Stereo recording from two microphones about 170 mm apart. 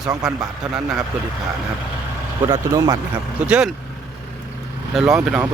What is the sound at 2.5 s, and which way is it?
Speech, 20° right (ahead or behind).